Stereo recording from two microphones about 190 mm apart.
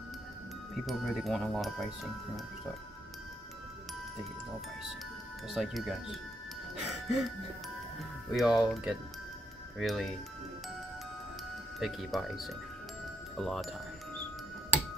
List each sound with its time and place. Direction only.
0.8 s speech: centre (ahead or behind)
5.5 s speech: centre (ahead or behind)
8.3 s speech: centre (ahead or behind)
11.8 s speech: centre (ahead or behind)